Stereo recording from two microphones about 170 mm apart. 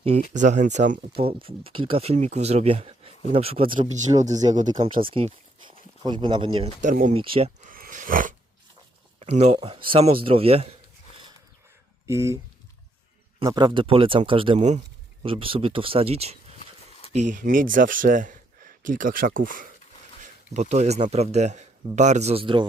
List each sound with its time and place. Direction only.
0.0 s speech: 45° right (ahead or behind)
1.2 s speech: 35° right (ahead or behind)
7.6 s a sound: 55° right (ahead or behind)
9.2 s speech: 40° right (ahead or behind)
12.0 s speech: 15° right (ahead or behind)
13.4 s speech: 25° right (ahead or behind); by 19.7 s 55° right (ahead or behind)
20.2 s speech: 45° right (ahead or behind)